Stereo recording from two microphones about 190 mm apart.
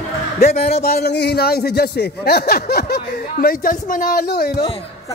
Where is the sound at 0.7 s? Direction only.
55° left (ahead or behind).